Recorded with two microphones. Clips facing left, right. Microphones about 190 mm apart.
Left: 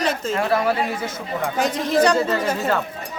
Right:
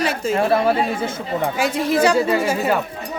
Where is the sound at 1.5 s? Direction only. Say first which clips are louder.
Left 1 dB; 10° right (ahead or behind).